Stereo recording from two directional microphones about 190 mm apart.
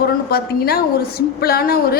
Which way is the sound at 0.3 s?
55° left (ahead or behind).